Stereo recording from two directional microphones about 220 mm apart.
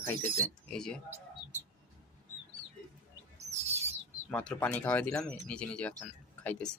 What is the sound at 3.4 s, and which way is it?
Bird, 30° right (ahead or behind).